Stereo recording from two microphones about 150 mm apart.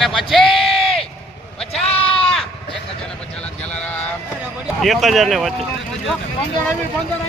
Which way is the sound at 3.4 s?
10° left (ahead or behind).